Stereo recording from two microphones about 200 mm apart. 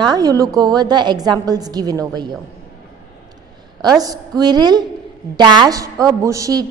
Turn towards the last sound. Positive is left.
turn(degrees=-15)  # may be behind; listen again after turning